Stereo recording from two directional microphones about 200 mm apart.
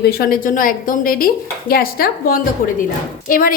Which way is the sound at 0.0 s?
50° left (ahead or behind).